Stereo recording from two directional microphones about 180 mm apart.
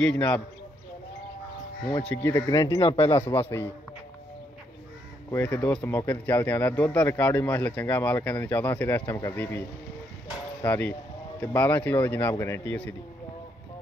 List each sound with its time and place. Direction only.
0.0 s speech: 5° left (ahead or behind)
2.0 s speech: 15° left (ahead or behind)
5.3 s speech: 10° left (ahead or behind)